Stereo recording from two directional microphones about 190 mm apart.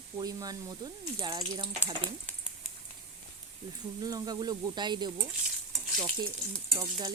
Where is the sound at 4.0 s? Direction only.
20° right (ahead or behind).